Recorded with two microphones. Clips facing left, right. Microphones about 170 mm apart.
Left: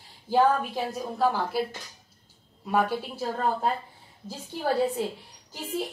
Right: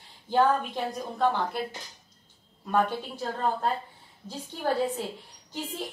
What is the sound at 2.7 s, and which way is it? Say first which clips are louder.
Speech: left 1 dB; 10° left (ahead or behind).